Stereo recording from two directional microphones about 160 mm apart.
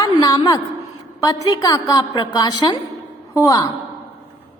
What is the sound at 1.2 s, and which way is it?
A woman's voice, 25° left (ahead or behind).